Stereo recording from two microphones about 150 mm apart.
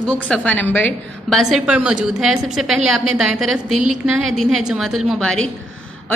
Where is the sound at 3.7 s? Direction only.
55° right (ahead or behind).